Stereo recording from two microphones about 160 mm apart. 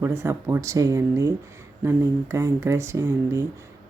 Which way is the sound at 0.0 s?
15° right (ahead or behind).